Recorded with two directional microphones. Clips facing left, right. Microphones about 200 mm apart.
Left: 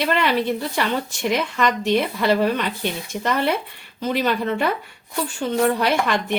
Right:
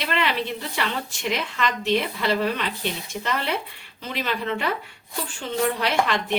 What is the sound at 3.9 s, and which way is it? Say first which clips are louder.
Speech: left 7 dB; 50° left (ahead or behind).